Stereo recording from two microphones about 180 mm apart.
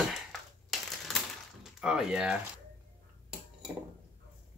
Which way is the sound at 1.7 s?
5° right (ahead or behind).